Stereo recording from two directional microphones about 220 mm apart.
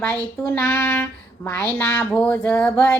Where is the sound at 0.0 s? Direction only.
5° left (ahead or behind).